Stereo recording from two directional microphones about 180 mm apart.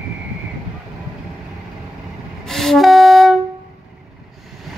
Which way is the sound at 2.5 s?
Centre (ahead or behind).